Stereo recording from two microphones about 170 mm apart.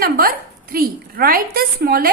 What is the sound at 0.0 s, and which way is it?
A woman's voice, 60° right (ahead or behind).